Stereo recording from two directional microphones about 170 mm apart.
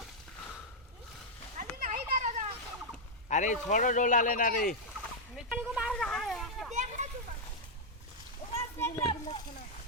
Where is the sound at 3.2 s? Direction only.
45° left (ahead or behind).